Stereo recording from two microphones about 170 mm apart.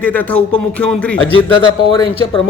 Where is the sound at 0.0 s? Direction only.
10° left (ahead or behind).